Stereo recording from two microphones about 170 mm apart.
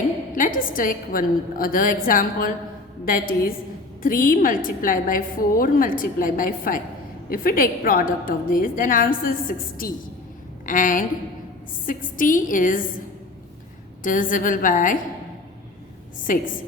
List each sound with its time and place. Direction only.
0.3 s a woman's voice: 50° left (ahead or behind)
14.0 s a woman's voice: 55° left (ahead or behind)
16.2 s a woman's voice: 50° left (ahead or behind)